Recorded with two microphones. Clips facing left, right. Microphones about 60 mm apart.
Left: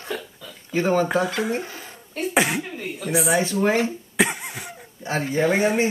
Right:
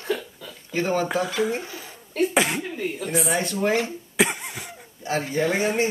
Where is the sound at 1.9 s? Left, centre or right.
Centre.